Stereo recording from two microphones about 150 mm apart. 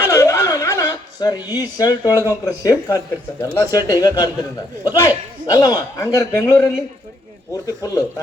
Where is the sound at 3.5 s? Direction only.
20° left (ahead or behind).